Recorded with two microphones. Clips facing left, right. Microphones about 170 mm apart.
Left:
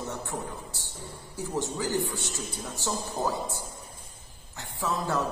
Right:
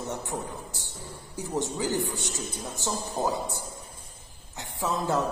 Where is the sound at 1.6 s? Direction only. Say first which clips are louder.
Right 1 dB; 20° right (ahead or behind).